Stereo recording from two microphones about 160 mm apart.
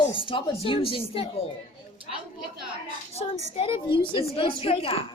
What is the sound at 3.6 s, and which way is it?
A woman's voice, 35° left (ahead or behind).